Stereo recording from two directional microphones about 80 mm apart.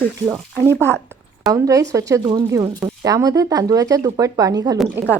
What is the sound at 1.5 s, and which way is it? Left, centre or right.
Speech, right.